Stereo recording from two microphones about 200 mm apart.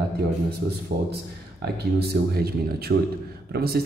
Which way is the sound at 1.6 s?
50° right (ahead or behind).